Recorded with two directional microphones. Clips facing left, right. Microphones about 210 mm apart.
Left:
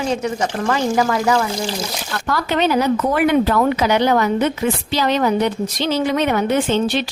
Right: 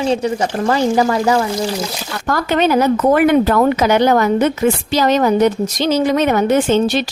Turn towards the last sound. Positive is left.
turn(degrees=-45)  # may be behind; listen again after turning